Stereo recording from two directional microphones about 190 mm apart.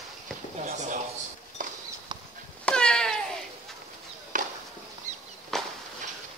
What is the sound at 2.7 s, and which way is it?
Cat, 5° left (ahead or behind).